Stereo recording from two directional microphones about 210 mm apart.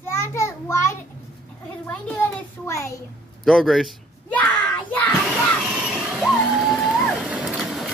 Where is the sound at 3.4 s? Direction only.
Centre (ahead or behind).